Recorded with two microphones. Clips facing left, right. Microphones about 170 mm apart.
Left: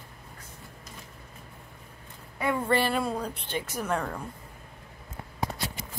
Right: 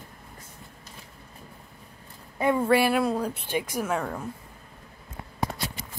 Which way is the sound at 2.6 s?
10° right (ahead or behind).